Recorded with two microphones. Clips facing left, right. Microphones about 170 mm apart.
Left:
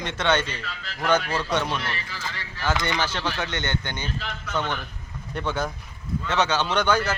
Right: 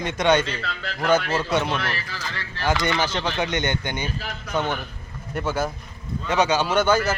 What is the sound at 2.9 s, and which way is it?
A man's voice, 10° right (ahead or behind).